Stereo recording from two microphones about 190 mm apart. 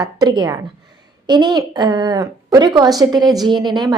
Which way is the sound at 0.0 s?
20° right (ahead or behind).